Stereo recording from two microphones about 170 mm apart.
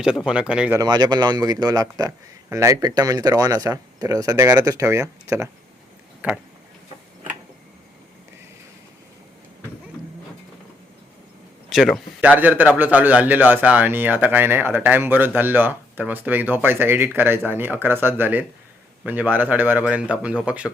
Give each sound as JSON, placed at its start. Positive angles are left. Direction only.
{"t": 0.3, "sound": "a man's voice", "side_deg": -5}
{"t": 0.8, "sound": "a man's voice", "side_deg": -25}
{"t": 11.7, "sound": "a man's voice", "side_deg": 0}